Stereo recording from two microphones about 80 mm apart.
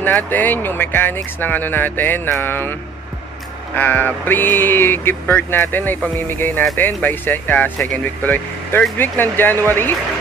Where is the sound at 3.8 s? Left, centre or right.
Left.